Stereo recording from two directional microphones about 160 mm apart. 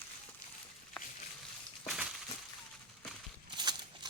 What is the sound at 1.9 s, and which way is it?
Crushing, 5° right (ahead or behind).